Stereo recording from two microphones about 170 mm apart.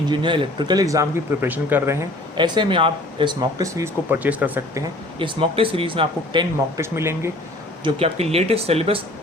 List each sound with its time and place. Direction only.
0.1 s speech: 25° right (ahead or behind)
2.3 s speech: 25° right (ahead or behind); by 4.8 s 10° right (ahead or behind)
5.2 s speech: 35° right (ahead or behind)
6.7 s speech: 15° right (ahead or behind)
7.9 s speech: 35° right (ahead or behind)